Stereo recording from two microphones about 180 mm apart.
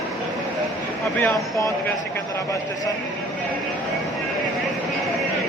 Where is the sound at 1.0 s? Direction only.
5° left (ahead or behind).